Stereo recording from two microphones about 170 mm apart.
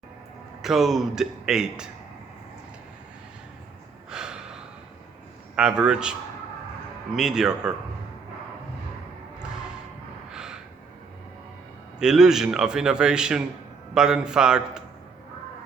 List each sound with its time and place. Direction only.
0.6 s a man's voice: centre (ahead or behind)
4.1 s a sound: 5° right (ahead or behind)
5.5 s a man's voice: 5° right (ahead or behind)
7.2 s a man's voice: 5° right (ahead or behind)
10.3 s gasp: 5° right (ahead or behind)
11.9 s a man's voice: 5° right (ahead or behind)